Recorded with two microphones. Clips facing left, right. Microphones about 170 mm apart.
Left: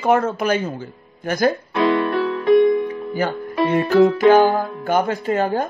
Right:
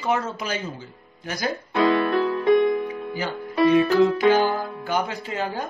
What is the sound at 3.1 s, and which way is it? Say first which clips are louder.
Speech: left 6 dB; 50° left (ahead or behind).